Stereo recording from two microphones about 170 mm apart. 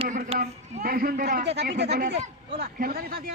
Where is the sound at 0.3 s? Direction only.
35° right (ahead or behind).